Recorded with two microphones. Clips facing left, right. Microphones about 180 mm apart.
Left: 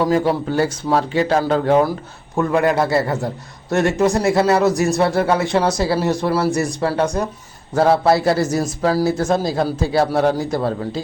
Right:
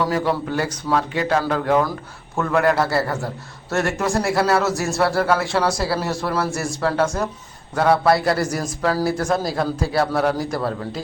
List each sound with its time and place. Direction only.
0.0 s speech: 30° left (ahead or behind)
2.3 s speech: 15° left (ahead or behind)
7.8 s speech: 25° left (ahead or behind)